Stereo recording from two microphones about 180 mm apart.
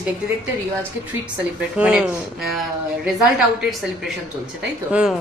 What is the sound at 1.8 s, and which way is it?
Speech, 5° right (ahead or behind).